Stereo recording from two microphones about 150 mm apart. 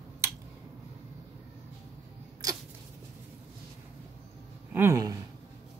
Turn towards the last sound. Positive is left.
turn(degrees=-20)  # may be behind; listen again after turning